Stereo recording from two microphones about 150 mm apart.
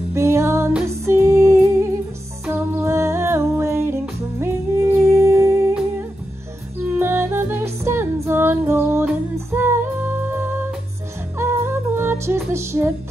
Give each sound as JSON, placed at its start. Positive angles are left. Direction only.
{"t": 0.1, "sound": "music", "side_deg": -20}
{"t": 6.9, "sound": "music", "side_deg": -15}